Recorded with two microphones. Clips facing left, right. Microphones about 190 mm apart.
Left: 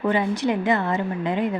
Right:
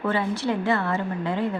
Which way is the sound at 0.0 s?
15° left (ahead or behind).